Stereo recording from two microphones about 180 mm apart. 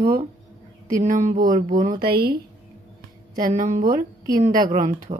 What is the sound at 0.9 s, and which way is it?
A woman's voice, 45° right (ahead or behind).